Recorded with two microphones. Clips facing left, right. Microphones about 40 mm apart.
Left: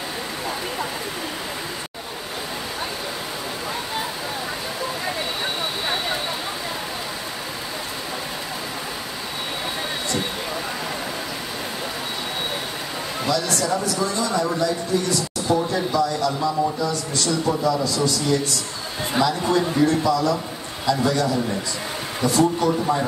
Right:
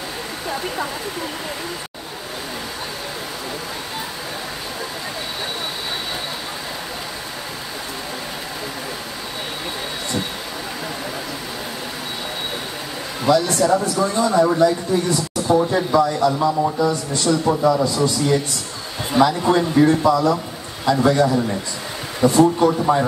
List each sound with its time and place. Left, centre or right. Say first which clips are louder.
13.3 s a man's voice: right 7 dB; right